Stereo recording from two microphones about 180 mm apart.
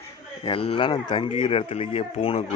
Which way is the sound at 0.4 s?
30° left (ahead or behind).